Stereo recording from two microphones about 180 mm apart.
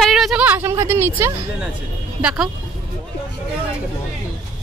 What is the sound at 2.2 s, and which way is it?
Speech, 5° right (ahead or behind).